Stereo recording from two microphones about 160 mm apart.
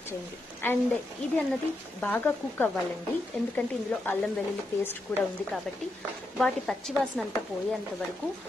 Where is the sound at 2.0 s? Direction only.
10° left (ahead or behind).